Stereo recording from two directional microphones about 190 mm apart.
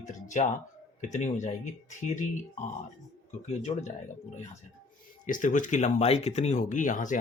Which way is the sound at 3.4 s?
35° left (ahead or behind).